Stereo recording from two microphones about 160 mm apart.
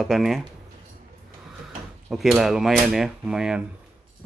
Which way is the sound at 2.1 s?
Centre (ahead or behind).